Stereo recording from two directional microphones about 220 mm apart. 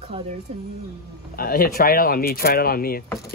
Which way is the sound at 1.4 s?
40° left (ahead or behind).